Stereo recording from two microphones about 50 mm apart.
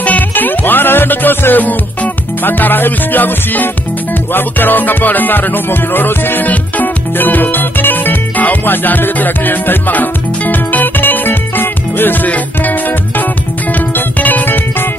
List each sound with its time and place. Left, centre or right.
0.0 s music: left
13.7 s music: left